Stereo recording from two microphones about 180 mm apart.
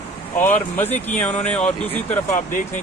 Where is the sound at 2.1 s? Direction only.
45° left (ahead or behind).